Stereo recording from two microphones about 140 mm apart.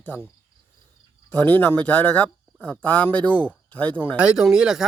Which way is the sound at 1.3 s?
10° left (ahead or behind).